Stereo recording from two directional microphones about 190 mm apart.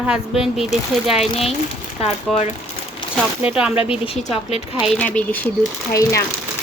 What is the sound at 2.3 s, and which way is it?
A woman's voice, centre (ahead or behind).